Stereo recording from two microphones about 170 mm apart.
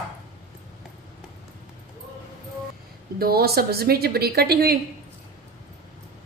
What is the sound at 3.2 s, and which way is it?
A woman's voice, 65° right (ahead or behind).